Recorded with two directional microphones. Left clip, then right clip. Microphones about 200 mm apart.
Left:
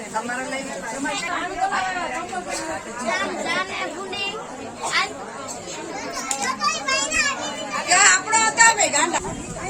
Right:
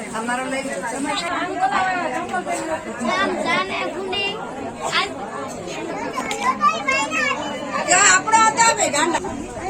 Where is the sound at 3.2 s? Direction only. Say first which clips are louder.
Right 6 dB; 20° left (ahead or behind).